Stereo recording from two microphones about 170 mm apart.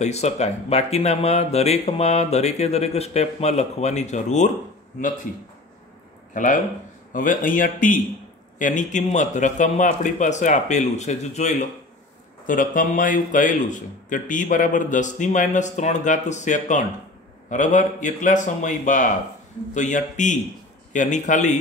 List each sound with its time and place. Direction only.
0.0 s speech: 40° left (ahead or behind)
6.3 s speech: 50° left (ahead or behind)